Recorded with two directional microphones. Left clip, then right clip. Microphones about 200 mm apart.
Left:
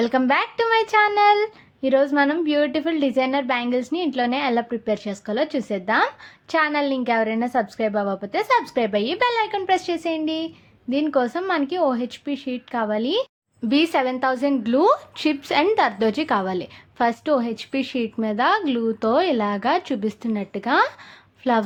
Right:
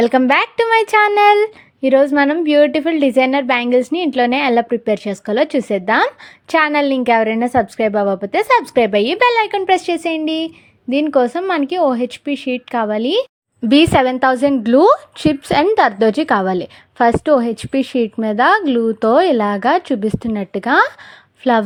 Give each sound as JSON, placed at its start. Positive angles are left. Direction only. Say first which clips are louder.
{"t": 0.0, "sound": "a woman's voice", "louder": "right 7 dB", "side_deg": -40}